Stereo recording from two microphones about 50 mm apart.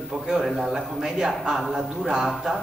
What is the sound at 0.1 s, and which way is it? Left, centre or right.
A man's voice, centre.